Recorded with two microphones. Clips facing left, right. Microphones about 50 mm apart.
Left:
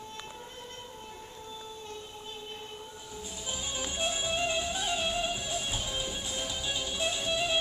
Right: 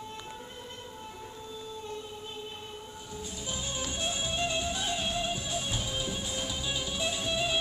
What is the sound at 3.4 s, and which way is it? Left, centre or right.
Music, centre.